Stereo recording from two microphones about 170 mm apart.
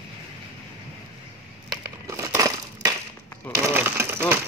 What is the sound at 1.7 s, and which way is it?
Crushing, 20° right (ahead or behind).